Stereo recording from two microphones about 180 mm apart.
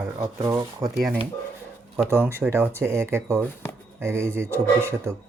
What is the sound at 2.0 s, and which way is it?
Speech, 15° right (ahead or behind).